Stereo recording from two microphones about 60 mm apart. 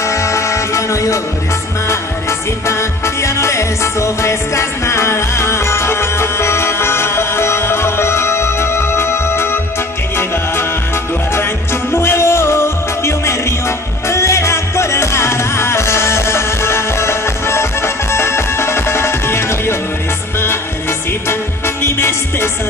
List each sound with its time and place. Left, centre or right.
0.0 s music: left
11.9 s music: left
21.3 s music: left